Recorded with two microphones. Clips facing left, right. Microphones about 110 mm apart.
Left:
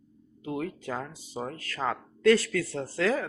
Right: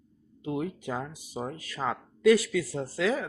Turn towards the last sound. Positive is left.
turn(degrees=0)  # may be behind; listen again after turning